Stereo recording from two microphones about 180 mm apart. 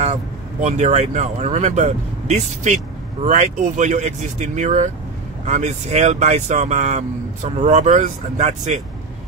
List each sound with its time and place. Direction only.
0.6 s speech: 40° right (ahead or behind)